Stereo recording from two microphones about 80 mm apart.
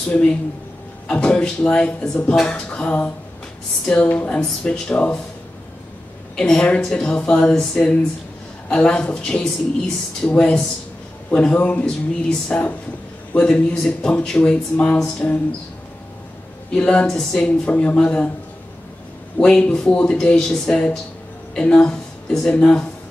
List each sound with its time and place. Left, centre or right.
0.1 s speech: centre
4.4 s speech: centre
6.3 s speech: centre
16.7 s speech: centre
19.3 s a woman's voice: centre